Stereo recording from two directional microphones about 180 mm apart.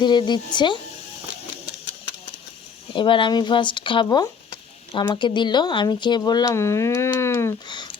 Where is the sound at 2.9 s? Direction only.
25° left (ahead or behind).